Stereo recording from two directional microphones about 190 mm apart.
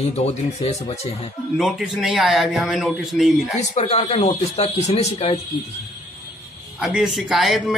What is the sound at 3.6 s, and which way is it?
Speech, 35° left (ahead or behind).